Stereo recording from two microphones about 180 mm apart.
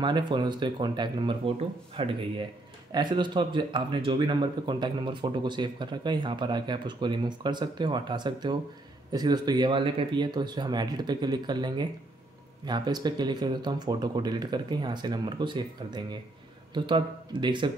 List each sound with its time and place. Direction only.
0.0 s speech: 25° right (ahead or behind)